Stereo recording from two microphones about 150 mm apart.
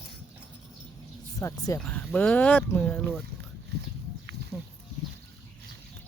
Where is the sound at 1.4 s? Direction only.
25° left (ahead or behind).